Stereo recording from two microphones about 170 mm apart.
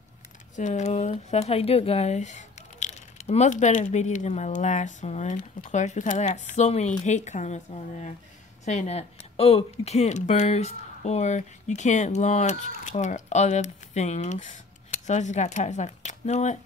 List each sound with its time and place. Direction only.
0.6 s speech: 45° left (ahead or behind)